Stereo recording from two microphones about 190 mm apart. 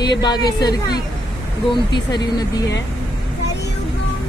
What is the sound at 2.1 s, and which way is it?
Speech, 20° left (ahead or behind).